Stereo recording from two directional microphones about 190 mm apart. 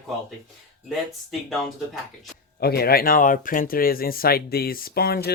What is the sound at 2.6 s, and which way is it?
Speech, 55° left (ahead or behind).